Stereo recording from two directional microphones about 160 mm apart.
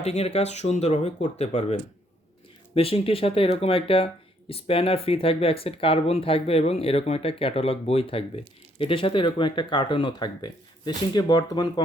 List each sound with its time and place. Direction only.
0.0 s speech: 40° left (ahead or behind); by 11.7 s 25° left (ahead or behind)